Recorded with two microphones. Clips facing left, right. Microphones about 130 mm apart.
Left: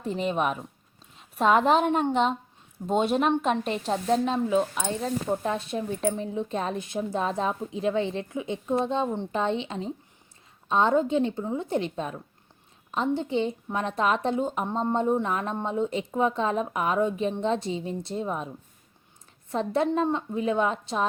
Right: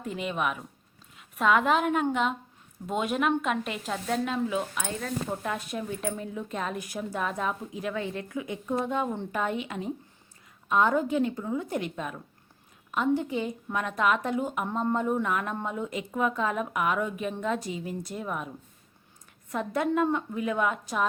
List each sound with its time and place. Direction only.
0.0 s a woman's voice: 30° left (ahead or behind)